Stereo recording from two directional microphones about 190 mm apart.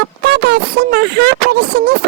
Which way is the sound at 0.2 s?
55° right (ahead or behind).